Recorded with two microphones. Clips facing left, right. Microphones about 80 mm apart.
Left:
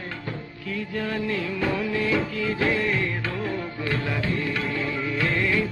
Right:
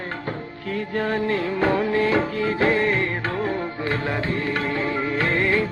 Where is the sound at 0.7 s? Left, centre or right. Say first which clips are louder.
Right 5 dB; right.